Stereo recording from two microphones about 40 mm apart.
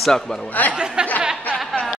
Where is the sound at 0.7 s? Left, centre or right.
Right.